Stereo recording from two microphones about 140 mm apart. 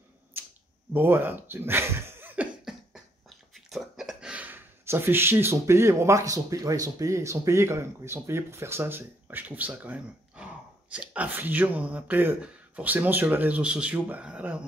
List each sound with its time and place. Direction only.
0.3 s a sound: 15° right (ahead or behind)
0.9 s speech: 15° right (ahead or behind)
2.6 s beatboxing: centre (ahead or behind)